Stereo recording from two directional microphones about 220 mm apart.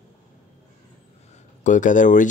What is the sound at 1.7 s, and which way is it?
Speech, 35° left (ahead or behind).